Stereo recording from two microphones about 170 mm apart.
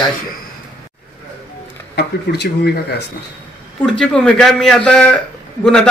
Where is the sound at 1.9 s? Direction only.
75° left (ahead or behind).